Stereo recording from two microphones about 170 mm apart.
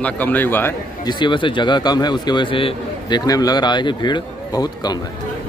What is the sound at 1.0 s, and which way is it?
A man's voice, 30° left (ahead or behind).